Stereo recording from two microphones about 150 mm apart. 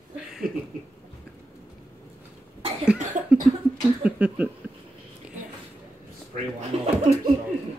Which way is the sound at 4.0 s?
10° right (ahead or behind).